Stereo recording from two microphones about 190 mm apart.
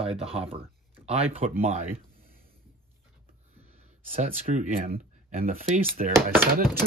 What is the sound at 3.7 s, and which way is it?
Speech, 35° right (ahead or behind).